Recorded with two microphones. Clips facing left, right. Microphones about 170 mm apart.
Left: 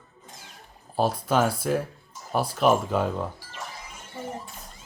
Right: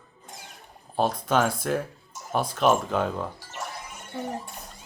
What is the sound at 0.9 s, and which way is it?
Speech, 5° left (ahead or behind).